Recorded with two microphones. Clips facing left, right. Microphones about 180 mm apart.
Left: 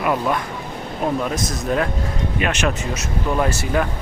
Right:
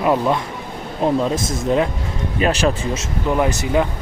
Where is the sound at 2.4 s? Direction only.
35° right (ahead or behind).